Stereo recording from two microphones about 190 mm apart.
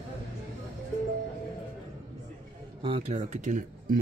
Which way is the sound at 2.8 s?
35° right (ahead or behind).